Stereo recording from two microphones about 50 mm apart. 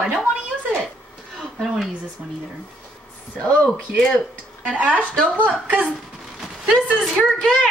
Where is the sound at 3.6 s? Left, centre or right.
Centre.